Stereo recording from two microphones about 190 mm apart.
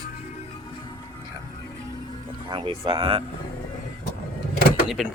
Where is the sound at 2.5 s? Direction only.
25° right (ahead or behind).